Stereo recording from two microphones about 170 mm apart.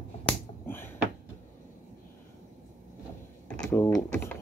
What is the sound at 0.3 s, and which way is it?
Finger snapping, 10° left (ahead or behind).